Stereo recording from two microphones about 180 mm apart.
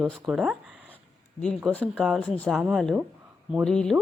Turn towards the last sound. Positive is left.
turn(degrees=5)  # may be behind; listen again after turning